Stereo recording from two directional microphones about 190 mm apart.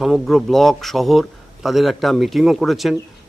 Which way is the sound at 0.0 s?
Centre (ahead or behind).